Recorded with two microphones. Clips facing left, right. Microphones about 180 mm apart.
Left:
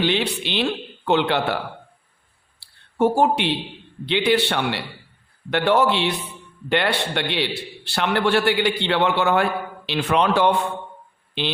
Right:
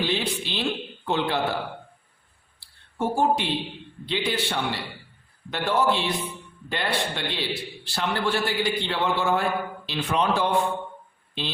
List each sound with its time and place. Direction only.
0.0 s a man's voice: 70° left (ahead or behind)
2.6 s a sound: 70° left (ahead or behind)
4.0 s a man's voice: 70° left (ahead or behind)